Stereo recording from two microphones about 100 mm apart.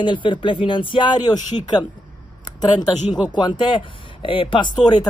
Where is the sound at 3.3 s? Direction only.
50° left (ahead or behind).